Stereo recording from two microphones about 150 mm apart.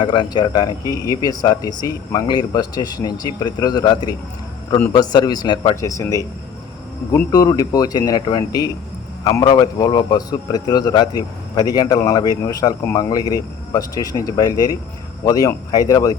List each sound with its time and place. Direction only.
0.0 s a man's voice: 30° left (ahead or behind)
7.3 s a man's voice: 25° left (ahead or behind)